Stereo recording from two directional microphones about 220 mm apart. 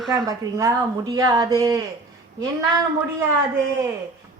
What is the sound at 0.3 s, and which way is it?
Speech, 15° right (ahead or behind).